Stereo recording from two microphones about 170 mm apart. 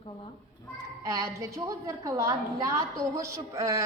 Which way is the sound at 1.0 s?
20° right (ahead or behind).